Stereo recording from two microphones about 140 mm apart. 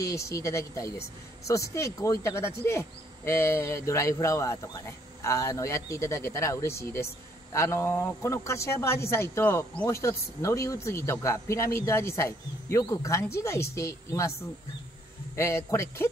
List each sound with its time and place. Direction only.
0.0 s speech: 20° left (ahead or behind)
15.3 s speech: 20° left (ahead or behind)